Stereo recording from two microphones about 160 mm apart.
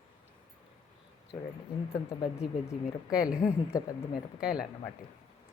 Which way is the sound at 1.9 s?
40° left (ahead or behind).